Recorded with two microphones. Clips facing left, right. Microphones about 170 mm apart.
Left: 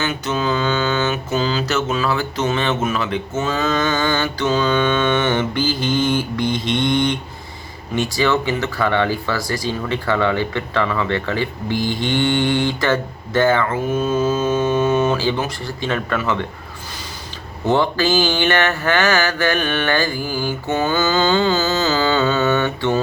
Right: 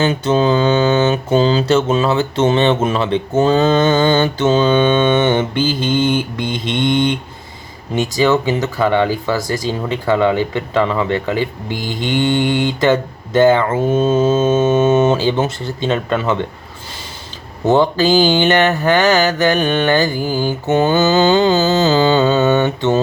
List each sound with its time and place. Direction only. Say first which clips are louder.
0.0 s speech: right 7 dB; 30° right (ahead or behind)
17.7 s speech: right 4 dB; 20° right (ahead or behind)